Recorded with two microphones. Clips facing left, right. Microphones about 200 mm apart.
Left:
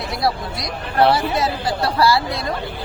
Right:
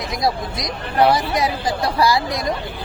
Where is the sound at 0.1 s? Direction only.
20° right (ahead or behind).